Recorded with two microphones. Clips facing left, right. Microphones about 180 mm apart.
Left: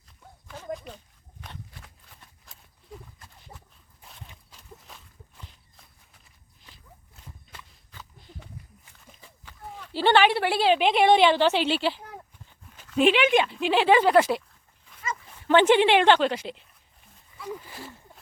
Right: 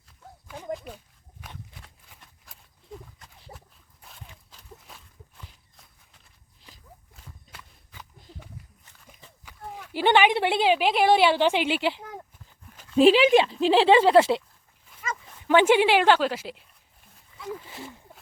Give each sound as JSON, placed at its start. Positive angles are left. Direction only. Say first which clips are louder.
{"t": 0.4, "sound": "a sound", "louder": "right 1 dB", "side_deg": -15}
{"t": 4.0, "sound": "walk", "louder": "even", "side_deg": 0}
{"t": 7.5, "sound": "walk", "louder": "even", "side_deg": -10}
{"t": 9.4, "sound": "a sound", "louder": "right 2 dB", "side_deg": -10}
{"t": 10.8, "sound": "a woman's voice", "louder": "left 1 dB", "side_deg": -5}
{"t": 13.0, "sound": "a woman's voice", "louder": "right 4 dB", "side_deg": -35}
{"t": 15.4, "sound": "a woman's voice", "louder": "even", "side_deg": -10}